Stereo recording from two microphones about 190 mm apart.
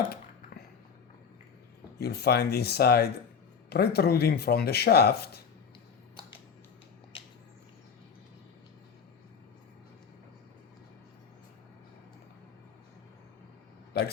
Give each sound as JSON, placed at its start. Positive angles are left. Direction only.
{"t": 2.0, "sound": "speech", "side_deg": 55}